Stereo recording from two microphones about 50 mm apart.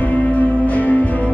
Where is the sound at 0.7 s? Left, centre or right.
Left.